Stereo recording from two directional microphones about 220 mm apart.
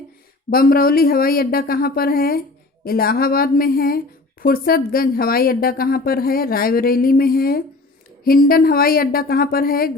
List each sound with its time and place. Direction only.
0.5 s speech: 40° left (ahead or behind)